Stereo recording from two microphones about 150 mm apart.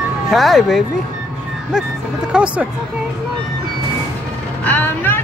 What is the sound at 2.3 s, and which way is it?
Speech, 10° right (ahead or behind).